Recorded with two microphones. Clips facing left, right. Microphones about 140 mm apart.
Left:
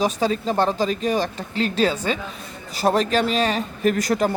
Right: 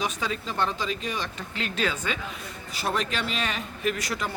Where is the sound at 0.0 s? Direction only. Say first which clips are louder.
Left 9 dB; 35° left (ahead or behind).